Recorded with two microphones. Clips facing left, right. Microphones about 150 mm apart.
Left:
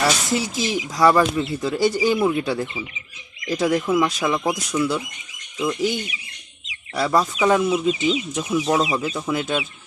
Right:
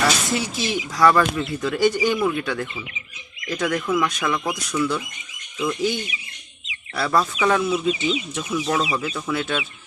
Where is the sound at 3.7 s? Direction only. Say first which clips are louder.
Left 3 dB; 10° left (ahead or behind).